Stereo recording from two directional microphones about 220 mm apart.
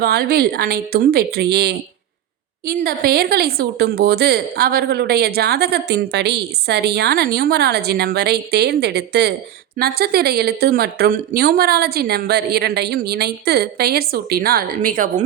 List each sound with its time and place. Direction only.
0.0 s speech: 45° right (ahead or behind)